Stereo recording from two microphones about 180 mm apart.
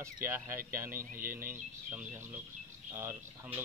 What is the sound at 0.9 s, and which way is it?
Speech, 50° right (ahead or behind).